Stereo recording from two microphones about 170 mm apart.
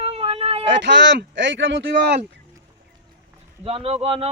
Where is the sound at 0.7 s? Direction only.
90° right.